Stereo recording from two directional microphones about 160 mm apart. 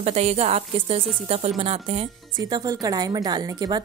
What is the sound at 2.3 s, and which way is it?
A woman's voice, 25° right (ahead or behind).